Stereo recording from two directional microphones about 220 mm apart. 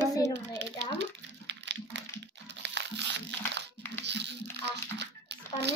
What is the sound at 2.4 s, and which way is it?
Crumpling, 50° right (ahead or behind).